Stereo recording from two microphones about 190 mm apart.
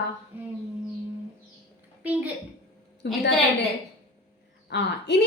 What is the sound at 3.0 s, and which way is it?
Speech, 60° left (ahead or behind).